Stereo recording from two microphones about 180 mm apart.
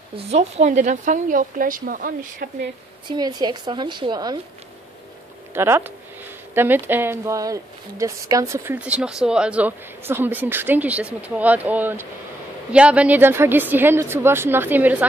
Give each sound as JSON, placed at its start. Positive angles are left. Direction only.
{"t": 0.1, "sound": "a woman's voice", "side_deg": -35}
{"t": 3.1, "sound": "a woman's voice", "side_deg": -20}
{"t": 5.5, "sound": "speech", "side_deg": -15}